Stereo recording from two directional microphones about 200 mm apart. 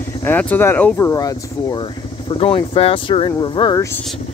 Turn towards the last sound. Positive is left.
turn(degrees=20)  # may be behind; listen again after turning